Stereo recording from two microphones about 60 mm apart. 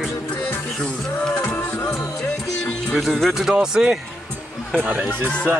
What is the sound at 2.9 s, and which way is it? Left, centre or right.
Speech, centre.